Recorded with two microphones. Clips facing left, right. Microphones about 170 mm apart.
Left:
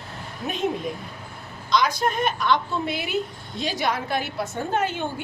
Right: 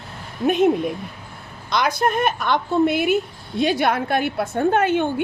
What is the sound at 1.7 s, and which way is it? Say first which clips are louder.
A woman's voice: right 2 dB; 60° right (ahead or behind).